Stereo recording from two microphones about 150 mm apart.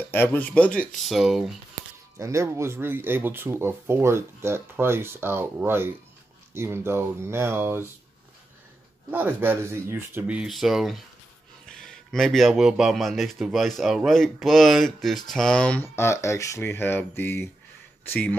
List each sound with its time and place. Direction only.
0.1 s speech: 15° left (ahead or behind)
2.1 s speech: 20° right (ahead or behind)
9.1 s speech: 15° right (ahead or behind); by 18.4 s 10° left (ahead or behind)